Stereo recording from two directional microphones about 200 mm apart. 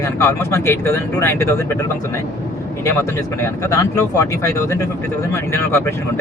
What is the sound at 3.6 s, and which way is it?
Speech, 15° left (ahead or behind).